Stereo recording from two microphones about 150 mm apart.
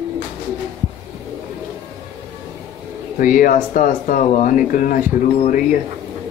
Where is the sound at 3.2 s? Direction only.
65° left (ahead or behind).